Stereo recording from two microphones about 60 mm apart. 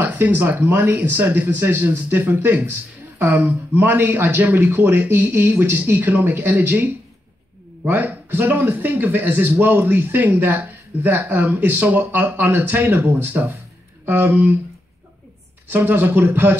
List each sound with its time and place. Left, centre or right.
0.0 s speech: right
15.7 s speech: right